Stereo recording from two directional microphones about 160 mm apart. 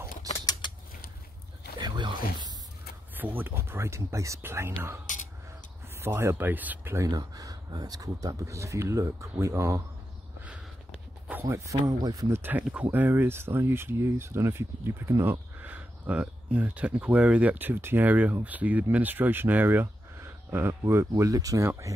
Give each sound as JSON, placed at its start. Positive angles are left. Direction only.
{"t": 0.5, "sound": "typing", "side_deg": 30}
{"t": 1.8, "sound": "a sound", "side_deg": -30}
{"t": 3.2, "sound": "speech", "side_deg": -10}
{"t": 5.0, "sound": "a sound", "side_deg": 50}
{"t": 5.9, "sound": "speech", "side_deg": -15}
{"t": 11.2, "sound": "speech", "side_deg": -15}